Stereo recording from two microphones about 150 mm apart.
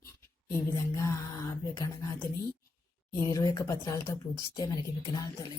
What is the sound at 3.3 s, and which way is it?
A woman's voice, 20° left (ahead or behind).